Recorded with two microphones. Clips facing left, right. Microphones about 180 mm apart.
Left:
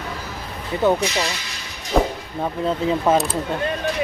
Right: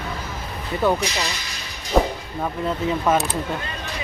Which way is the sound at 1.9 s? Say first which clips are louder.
Even; centre (ahead or behind).